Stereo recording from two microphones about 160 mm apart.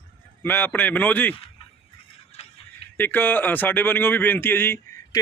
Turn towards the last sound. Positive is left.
turn(degrees=15)  # may be behind; listen again after turning